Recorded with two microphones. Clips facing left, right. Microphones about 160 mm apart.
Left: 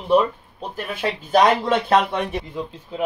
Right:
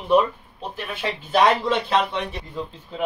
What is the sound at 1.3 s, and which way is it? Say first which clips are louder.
Speech: left 2 dB; 50° left (ahead or behind).